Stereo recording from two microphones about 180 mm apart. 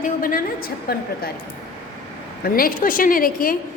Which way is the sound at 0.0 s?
50° left (ahead or behind).